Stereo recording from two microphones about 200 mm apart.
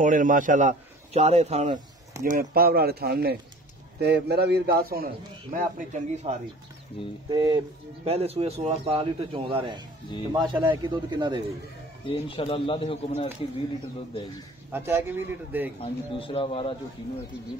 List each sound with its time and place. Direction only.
0.0 s a man's voice: 40° right (ahead or behind)
2.2 s a man's voice: 45° right (ahead or behind)
7.2 s speech: 20° right (ahead or behind)
12.1 s speech: 25° left (ahead or behind)
14.7 s a man's voice: 10° right (ahead or behind)
15.8 s speech: 25° left (ahead or behind)